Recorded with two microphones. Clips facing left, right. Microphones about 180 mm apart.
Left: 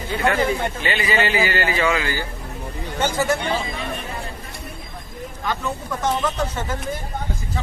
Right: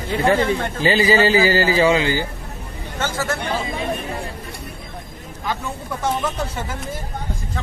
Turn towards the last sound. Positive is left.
turn(degrees=-10)  # may be behind; listen again after turning